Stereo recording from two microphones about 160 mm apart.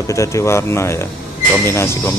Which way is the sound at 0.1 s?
15° left (ahead or behind).